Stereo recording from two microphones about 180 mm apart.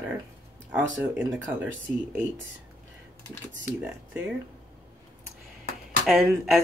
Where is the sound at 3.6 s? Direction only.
10° right (ahead or behind).